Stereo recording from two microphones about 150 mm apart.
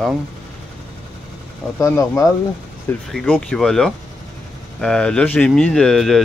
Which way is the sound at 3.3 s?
Centre (ahead or behind).